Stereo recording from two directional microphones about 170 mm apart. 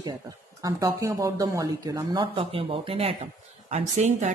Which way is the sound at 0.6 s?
20° right (ahead or behind).